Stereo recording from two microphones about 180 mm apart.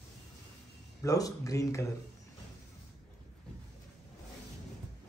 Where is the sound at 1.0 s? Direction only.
20° left (ahead or behind).